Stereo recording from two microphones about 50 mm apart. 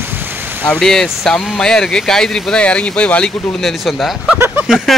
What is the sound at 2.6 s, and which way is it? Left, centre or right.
Speech, left.